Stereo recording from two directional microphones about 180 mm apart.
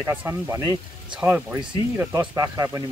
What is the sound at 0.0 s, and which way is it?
Speech, 15° right (ahead or behind).